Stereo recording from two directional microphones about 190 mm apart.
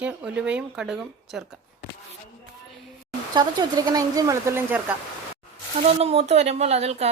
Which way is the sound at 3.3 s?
20° right (ahead or behind).